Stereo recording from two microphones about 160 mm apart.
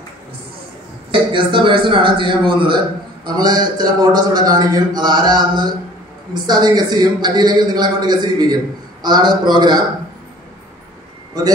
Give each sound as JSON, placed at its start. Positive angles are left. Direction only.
{"t": 1.1, "sound": "a man's voice", "side_deg": -30}